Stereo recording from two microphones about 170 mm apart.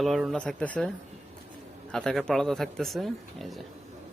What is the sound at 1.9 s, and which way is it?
Speech, 5° left (ahead or behind).